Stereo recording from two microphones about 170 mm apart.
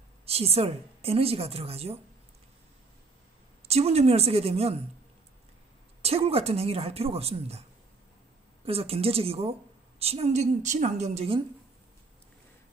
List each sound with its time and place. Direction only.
0.2 s a woman's voice: 35° right (ahead or behind)
3.6 s a woman's voice: 40° right (ahead or behind)
6.0 s a woman's voice: 35° right (ahead or behind)
8.6 s a woman's voice: 35° right (ahead or behind)